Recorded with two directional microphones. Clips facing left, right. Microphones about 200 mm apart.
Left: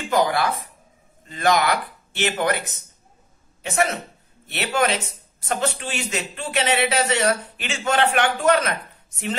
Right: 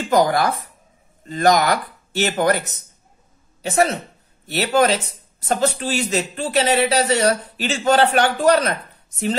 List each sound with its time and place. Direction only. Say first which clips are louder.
0.1 s speech: right 3 dB; 40° right (ahead or behind)